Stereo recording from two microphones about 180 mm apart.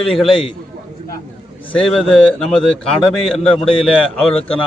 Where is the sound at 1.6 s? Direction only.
5° left (ahead or behind).